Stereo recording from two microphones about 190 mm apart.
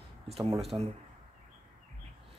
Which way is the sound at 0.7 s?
25° right (ahead or behind).